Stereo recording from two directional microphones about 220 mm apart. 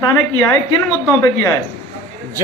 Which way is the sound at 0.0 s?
10° left (ahead or behind).